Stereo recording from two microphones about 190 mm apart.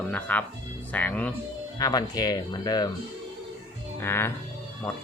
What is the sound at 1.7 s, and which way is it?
Speech, 20° left (ahead or behind).